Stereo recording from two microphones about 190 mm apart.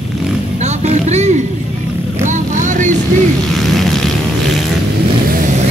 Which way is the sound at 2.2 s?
40° right (ahead or behind).